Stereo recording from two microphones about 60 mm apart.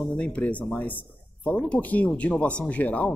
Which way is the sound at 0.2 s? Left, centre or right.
Left.